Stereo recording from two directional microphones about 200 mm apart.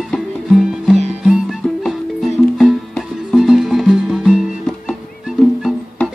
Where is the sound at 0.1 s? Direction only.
Centre (ahead or behind).